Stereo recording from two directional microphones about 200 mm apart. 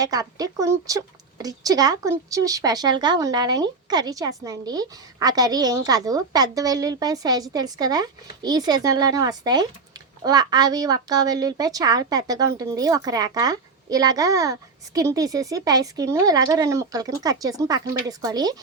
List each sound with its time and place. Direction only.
0.0 s speech: 20° right (ahead or behind)